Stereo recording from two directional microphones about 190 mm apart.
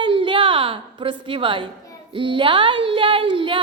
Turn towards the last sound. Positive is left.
turn(degrees=-25)  # may be behind; listen again after turning